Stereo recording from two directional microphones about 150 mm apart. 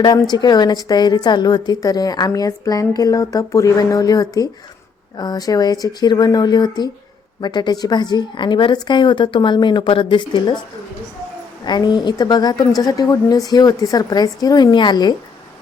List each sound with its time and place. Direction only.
0.0 s a woman's voice: 30° left (ahead or behind)
11.6 s a woman's voice: 30° left (ahead or behind)